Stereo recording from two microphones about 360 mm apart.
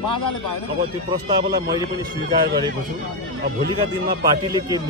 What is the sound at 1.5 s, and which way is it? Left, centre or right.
Speech, centre.